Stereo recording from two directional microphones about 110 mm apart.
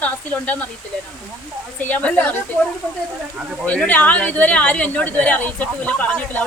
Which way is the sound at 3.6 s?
10° left (ahead or behind).